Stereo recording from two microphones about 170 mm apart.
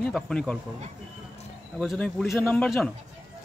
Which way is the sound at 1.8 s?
5° left (ahead or behind).